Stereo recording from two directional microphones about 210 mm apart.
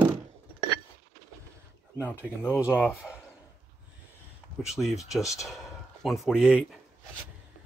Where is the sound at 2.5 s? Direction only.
5° right (ahead or behind).